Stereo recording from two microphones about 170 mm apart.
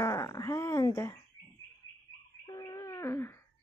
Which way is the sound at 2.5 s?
20° left (ahead or behind).